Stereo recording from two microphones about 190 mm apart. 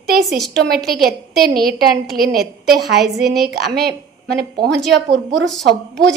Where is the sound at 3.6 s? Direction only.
60° right (ahead or behind).